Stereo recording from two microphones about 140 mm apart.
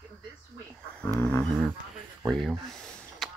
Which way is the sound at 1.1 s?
10° left (ahead or behind).